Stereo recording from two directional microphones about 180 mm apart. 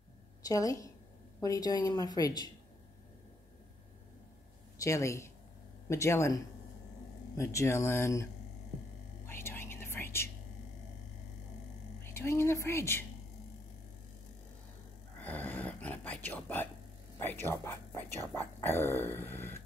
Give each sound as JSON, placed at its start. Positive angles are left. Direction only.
{"t": 0.4, "sound": "a woman's voice", "side_deg": 20}
{"t": 4.8, "sound": "speech", "side_deg": 15}
{"t": 9.2, "sound": "whispering", "side_deg": 15}
{"t": 12.0, "sound": "speech", "side_deg": 15}
{"t": 15.1, "sound": "a sound", "side_deg": 10}
{"t": 17.2, "sound": "speech", "side_deg": 10}